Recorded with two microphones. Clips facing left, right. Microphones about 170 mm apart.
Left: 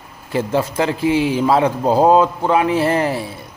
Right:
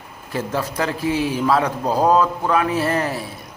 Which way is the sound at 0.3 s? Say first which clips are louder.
Left 5 dB; 25° left (ahead or behind).